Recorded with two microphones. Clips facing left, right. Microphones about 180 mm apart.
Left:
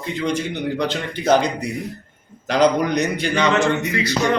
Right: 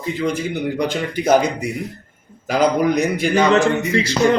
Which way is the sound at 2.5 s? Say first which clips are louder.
Right 1 dB; 5° right (ahead or behind).